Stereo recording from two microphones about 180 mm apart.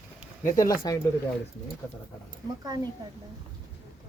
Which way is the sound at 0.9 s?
20° left (ahead or behind).